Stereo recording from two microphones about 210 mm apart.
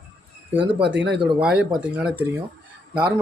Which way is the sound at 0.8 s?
55° right (ahead or behind).